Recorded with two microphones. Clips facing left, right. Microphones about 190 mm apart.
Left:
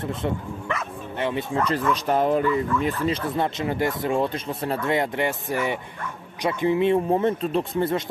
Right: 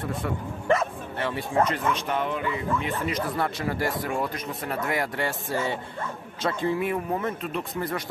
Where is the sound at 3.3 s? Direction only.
20° left (ahead or behind).